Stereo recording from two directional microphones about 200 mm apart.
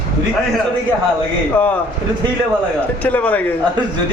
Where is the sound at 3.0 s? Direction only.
5° left (ahead or behind).